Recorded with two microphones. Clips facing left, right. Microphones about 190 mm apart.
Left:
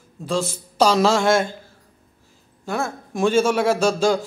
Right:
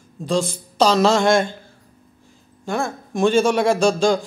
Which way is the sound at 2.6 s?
5° left (ahead or behind).